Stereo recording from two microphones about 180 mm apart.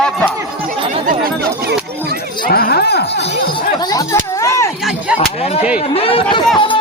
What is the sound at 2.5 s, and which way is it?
Speech, 60° left (ahead or behind).